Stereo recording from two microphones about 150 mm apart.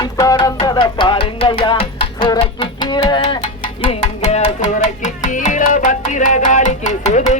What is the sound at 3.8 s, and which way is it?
Music, 45° left (ahead or behind).